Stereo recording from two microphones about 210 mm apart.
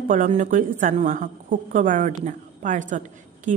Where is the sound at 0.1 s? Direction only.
35° right (ahead or behind).